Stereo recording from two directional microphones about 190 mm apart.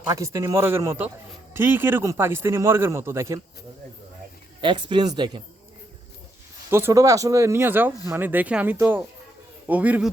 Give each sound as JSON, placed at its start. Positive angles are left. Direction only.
{"t": 0.1, "sound": "speech", "side_deg": -15}
{"t": 4.6, "sound": "speech", "side_deg": -25}
{"t": 6.7, "sound": "speech", "side_deg": -15}